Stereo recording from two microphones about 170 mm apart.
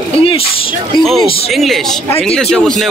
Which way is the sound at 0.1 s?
35° left (ahead or behind).